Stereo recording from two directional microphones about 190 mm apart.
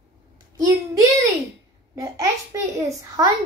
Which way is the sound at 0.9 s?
15° right (ahead or behind).